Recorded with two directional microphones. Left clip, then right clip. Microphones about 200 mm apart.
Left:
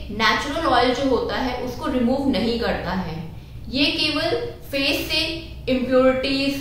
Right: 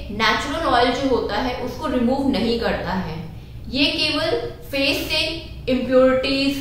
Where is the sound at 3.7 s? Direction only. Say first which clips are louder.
Right 1 dB; centre (ahead or behind).